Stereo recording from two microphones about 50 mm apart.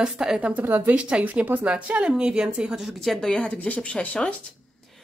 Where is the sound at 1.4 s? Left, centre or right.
Right.